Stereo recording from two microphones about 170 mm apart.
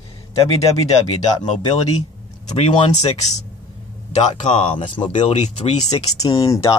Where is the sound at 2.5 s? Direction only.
35° left (ahead or behind).